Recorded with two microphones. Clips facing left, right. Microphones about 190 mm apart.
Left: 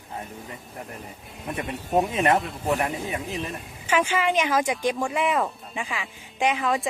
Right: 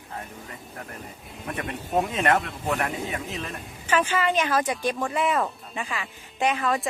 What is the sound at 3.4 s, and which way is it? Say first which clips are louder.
Speech: left 2 dB; 10° left (ahead or behind).